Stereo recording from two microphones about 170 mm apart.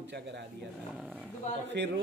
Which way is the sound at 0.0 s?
90° right.